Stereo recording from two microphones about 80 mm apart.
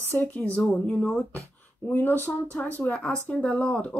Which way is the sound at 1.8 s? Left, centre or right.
Left.